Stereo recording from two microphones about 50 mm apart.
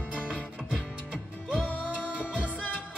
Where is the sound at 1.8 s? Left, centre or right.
Left.